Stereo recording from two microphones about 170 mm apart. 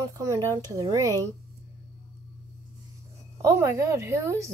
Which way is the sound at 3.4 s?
15° right (ahead or behind).